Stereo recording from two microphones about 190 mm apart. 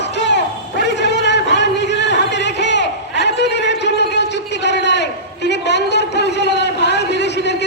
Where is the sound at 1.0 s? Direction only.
65° left (ahead or behind).